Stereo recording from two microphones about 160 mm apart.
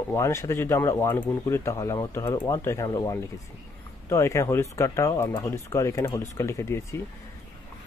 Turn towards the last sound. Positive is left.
turn(degrees=20)  # may be behind; listen again after turning